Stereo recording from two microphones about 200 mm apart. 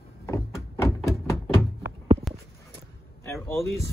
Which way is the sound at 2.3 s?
Centre (ahead or behind).